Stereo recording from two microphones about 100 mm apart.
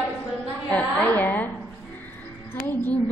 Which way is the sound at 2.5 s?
20° left (ahead or behind).